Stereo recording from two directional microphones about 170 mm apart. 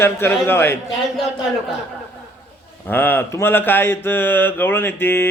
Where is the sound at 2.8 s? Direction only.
10° left (ahead or behind).